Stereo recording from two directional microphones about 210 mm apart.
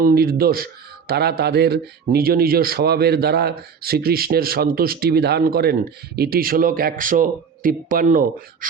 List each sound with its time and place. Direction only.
0.0 s a man's voice: 45° right (ahead or behind)